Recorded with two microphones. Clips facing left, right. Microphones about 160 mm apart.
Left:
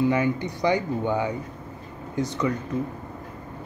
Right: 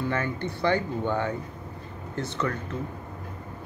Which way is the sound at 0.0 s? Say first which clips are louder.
Left 6 dB; 15° left (ahead or behind).